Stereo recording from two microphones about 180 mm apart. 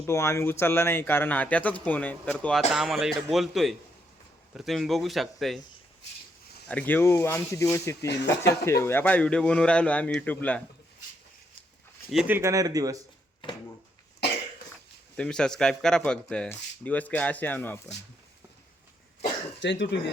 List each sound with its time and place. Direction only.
0.0 s speech: 15° left (ahead or behind)
6.7 s speech: 10° left (ahead or behind)
12.1 s speech: 15° right (ahead or behind)
15.1 s speech: 5° left (ahead or behind)
19.5 s speech: 75° left (ahead or behind)